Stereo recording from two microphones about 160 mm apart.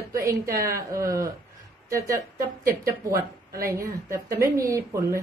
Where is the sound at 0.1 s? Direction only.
20° right (ahead or behind).